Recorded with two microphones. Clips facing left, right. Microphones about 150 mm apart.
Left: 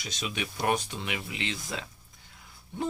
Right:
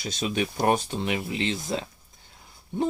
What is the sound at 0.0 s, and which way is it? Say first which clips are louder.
Speech: right 8 dB; 30° right (ahead or behind).